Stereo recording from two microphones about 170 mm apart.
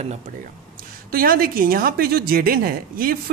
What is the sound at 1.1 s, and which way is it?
A woman's voice, 60° right (ahead or behind).